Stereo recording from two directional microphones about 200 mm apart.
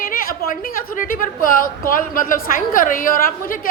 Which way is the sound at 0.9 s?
45° left (ahead or behind).